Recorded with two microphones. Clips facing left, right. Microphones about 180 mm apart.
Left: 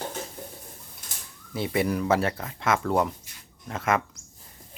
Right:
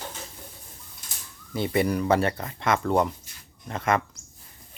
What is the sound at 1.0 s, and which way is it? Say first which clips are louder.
Bird: left 1 dB; 50° left (ahead or behind).